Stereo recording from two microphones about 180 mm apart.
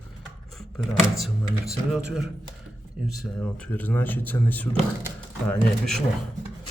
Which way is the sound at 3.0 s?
Centre (ahead or behind).